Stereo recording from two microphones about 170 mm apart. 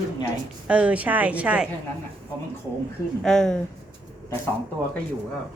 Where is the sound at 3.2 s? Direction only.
5° left (ahead or behind).